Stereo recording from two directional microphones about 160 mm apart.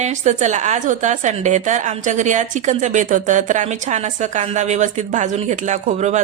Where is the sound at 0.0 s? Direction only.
45° right (ahead or behind).